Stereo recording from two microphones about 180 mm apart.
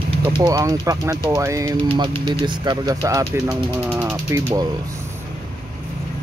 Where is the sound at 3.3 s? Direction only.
5° right (ahead or behind).